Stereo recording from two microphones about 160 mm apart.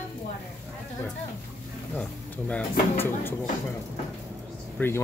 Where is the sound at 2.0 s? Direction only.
10° left (ahead or behind).